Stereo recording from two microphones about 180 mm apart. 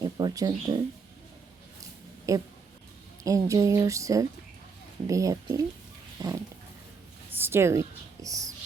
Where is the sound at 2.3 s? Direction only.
20° right (ahead or behind).